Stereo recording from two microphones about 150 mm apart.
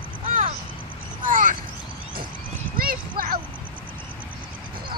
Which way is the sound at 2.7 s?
75° right (ahead or behind).